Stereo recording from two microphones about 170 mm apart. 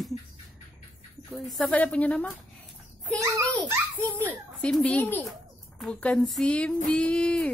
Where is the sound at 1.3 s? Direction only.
Centre (ahead or behind).